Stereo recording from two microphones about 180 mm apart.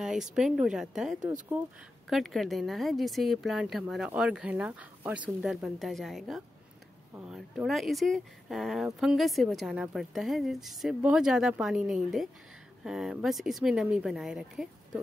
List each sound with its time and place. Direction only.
0.0 s speech: 5° right (ahead or behind)